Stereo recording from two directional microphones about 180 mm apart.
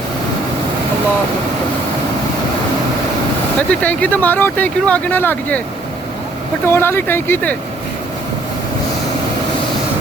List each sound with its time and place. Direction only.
3.7 s speech: 10° left (ahead or behind)
6.7 s speech: 10° left (ahead or behind)